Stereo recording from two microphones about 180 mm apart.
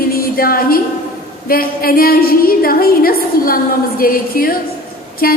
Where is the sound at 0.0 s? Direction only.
55° left (ahead or behind).